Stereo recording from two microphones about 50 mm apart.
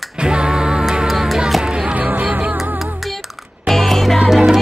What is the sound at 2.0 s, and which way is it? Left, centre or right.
Music, right.